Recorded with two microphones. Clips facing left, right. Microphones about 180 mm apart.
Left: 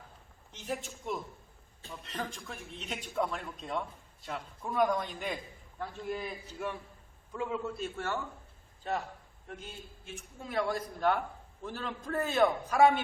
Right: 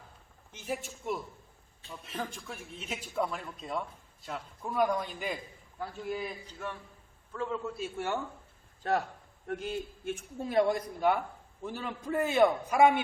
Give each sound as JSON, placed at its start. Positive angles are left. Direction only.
{"t": 1.0, "sound": "a man's voice", "side_deg": -5}
{"t": 6.4, "sound": "a man's voice", "side_deg": 10}
{"t": 7.7, "sound": "a man's voice", "side_deg": 0}
{"t": 7.9, "sound": "a man's voice", "side_deg": -15}
{"t": 8.8, "sound": "a man's voice", "side_deg": -65}
{"t": 10.5, "sound": "a man's voice", "side_deg": -25}
{"t": 11.6, "sound": "a man's voice", "side_deg": -10}